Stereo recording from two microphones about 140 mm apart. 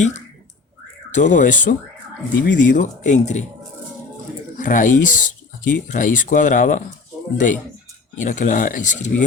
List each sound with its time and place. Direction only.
1.1 s speech: 60° left (ahead or behind)
4.5 s speech: 70° left (ahead or behind)